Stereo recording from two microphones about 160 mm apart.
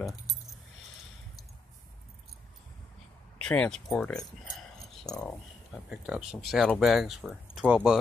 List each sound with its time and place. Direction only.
3.3 s speech: 5° left (ahead or behind)